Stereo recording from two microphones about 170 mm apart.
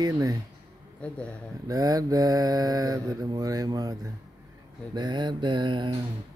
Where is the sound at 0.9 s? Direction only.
5° left (ahead or behind).